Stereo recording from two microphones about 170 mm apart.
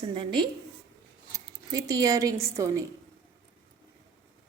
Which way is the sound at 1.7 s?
20° right (ahead or behind).